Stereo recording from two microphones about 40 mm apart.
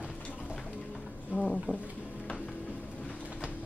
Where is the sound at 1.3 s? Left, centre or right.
Centre.